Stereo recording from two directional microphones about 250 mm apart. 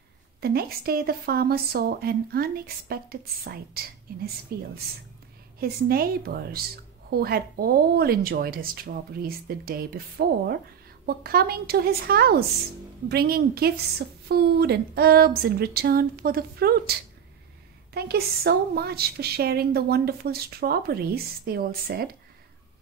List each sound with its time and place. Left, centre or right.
0.4 s a woman's voice: right